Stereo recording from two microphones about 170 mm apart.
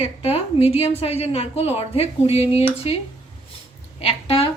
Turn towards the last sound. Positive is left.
turn(degrees=35)  # may be behind; listen again after turning